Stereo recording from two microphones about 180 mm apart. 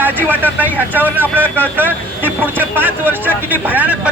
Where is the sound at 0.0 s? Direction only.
10° right (ahead or behind).